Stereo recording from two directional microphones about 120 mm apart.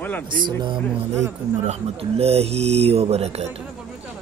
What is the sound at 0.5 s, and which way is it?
Speech, 40° right (ahead or behind).